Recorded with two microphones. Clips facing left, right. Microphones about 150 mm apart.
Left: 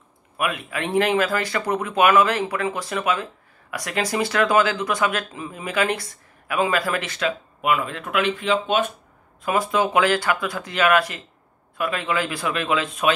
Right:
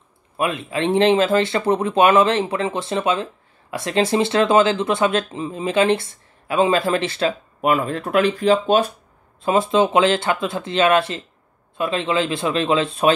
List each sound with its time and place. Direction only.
0.4 s speech: 30° right (ahead or behind)